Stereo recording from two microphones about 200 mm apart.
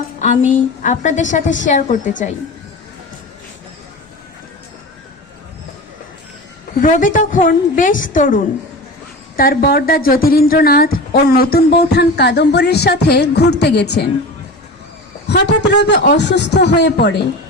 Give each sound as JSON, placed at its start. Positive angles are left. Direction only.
{"t": 0.2, "sound": "a sound", "side_deg": 40}
{"t": 0.8, "sound": "a woman's voice", "side_deg": 35}
{"t": 6.8, "sound": "a woman's voice", "side_deg": 40}
{"t": 15.3, "sound": "a man's voice", "side_deg": 60}